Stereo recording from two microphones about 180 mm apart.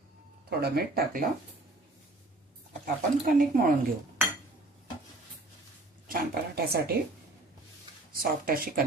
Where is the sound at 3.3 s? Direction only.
50° right (ahead or behind).